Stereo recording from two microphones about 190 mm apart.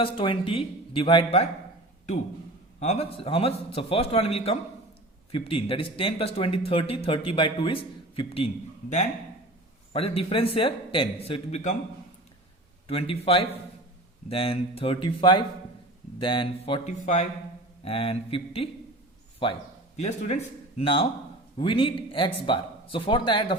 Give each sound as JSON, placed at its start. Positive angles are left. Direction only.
{"t": 0.0, "sound": "speech", "side_deg": 25}
{"t": 2.8, "sound": "a man's voice", "side_deg": 35}
{"t": 9.9, "sound": "speech", "side_deg": 30}
{"t": 12.9, "sound": "a man's voice", "side_deg": 30}
{"t": 20.0, "sound": "a man's voice", "side_deg": 35}